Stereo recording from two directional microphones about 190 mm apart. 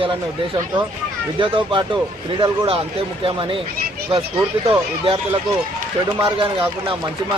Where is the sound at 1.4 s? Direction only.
25° right (ahead or behind).